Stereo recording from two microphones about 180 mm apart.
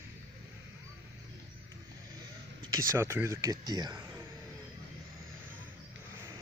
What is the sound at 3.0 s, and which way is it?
Speech, 15° right (ahead or behind).